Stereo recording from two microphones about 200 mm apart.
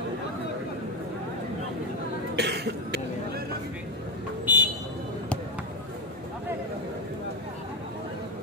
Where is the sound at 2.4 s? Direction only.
55° right (ahead or behind).